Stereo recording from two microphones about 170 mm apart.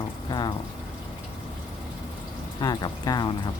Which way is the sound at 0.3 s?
25° left (ahead or behind).